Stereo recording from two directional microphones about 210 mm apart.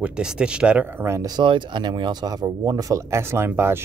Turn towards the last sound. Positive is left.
turn(degrees=-10)  # may be behind; listen again after turning